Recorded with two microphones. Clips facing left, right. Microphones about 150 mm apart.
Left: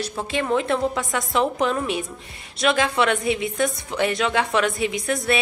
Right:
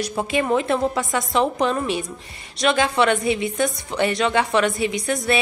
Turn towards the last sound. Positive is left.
turn(degrees=0)  # may be behind; listen again after turning